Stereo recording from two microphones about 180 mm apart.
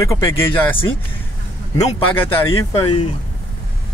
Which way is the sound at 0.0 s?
20° left (ahead or behind).